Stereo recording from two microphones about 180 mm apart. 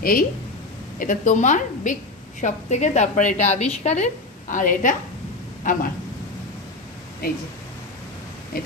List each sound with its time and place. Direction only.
0.0 s a woman's voice: 55° left (ahead or behind)
7.2 s speech: 55° left (ahead or behind)
8.5 s speech: 55° left (ahead or behind)